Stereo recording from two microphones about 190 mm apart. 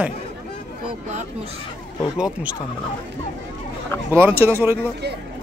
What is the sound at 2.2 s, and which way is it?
Speech, 5° right (ahead or behind).